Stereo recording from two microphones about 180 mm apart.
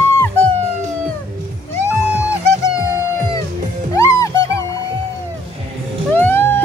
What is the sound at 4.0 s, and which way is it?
Music, 15° left (ahead or behind).